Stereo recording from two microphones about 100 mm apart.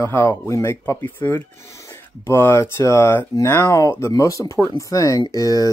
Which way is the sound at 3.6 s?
30° left (ahead or behind).